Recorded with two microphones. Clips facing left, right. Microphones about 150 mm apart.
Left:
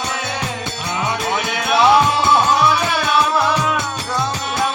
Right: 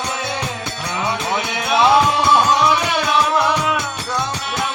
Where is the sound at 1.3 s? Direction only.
20° right (ahead or behind).